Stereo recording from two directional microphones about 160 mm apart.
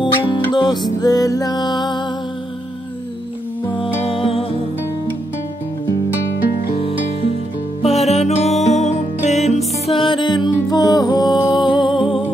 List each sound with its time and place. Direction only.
0.5 s music: 30° left (ahead or behind)
4.1 s music: 35° left (ahead or behind)
6.8 s music: 35° left (ahead or behind)
9.8 s music: 30° left (ahead or behind)